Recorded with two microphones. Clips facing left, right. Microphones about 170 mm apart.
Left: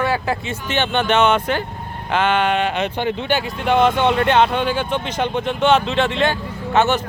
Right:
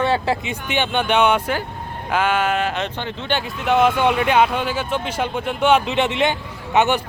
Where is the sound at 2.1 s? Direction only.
10° right (ahead or behind).